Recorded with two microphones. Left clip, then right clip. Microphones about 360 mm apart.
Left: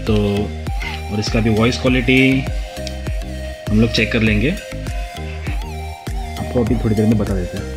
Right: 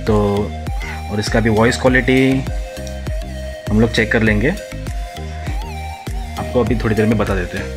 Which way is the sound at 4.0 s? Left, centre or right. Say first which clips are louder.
Right 3 dB; right.